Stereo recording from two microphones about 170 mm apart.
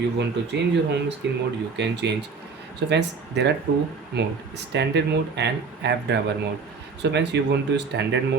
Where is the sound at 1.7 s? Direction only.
90° right.